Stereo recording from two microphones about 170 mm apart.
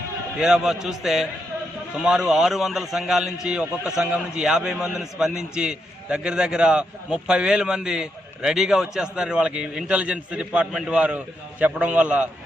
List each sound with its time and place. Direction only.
0.3 s a man's voice: 5° right (ahead or behind)